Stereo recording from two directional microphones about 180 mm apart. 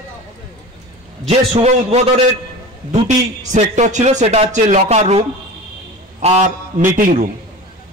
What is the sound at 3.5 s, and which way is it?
A man's voice, 40° right (ahead or behind).